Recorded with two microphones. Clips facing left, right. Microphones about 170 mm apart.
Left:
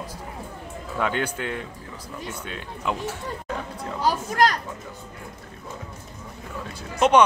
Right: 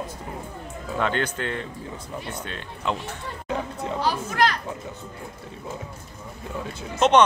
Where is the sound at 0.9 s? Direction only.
10° left (ahead or behind).